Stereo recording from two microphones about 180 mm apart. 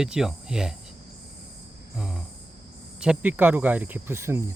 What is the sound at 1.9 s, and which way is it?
Cricket, centre (ahead or behind).